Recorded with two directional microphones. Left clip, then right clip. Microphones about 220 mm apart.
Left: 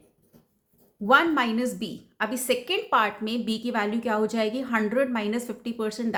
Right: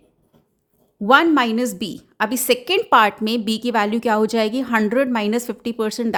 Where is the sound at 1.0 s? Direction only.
45° right (ahead or behind).